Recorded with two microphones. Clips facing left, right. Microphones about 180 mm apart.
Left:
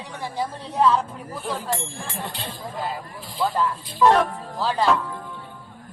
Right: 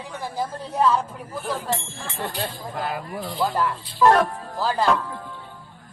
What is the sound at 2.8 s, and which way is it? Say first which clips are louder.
Speech: right 4 dB; 75° right (ahead or behind).